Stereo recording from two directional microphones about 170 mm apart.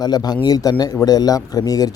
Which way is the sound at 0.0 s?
25° left (ahead or behind).